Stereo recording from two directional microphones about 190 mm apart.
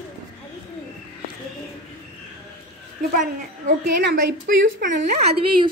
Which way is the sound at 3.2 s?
45° right (ahead or behind).